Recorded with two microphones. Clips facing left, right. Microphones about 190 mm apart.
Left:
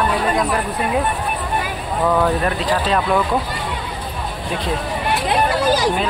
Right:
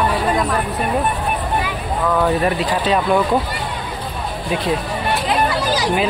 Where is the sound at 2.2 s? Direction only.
5° right (ahead or behind).